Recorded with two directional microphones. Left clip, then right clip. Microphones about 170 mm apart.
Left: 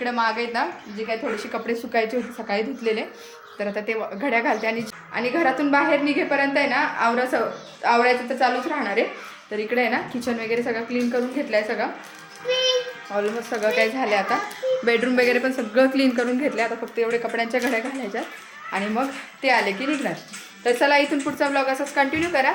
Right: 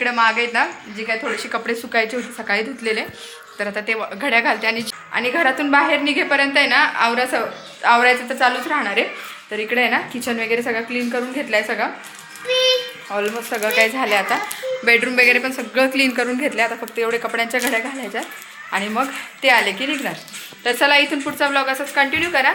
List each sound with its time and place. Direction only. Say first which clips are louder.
0.0 s a woman's voice: right 6 dB; 20° right (ahead or behind)
1.0 s a woman's voice: right 4 dB; centre (ahead or behind)
12.5 s child singing: right 4 dB; 25° left (ahead or behind)
13.1 s a woman's voice: right 2 dB; 5° right (ahead or behind)
14.8 s speech: right 7 dB; 25° left (ahead or behind)
16.1 s a woman's voice: right 3 dB; 5° left (ahead or behind)